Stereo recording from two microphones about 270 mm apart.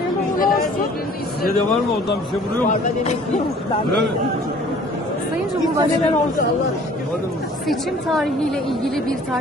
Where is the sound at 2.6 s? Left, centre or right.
Left.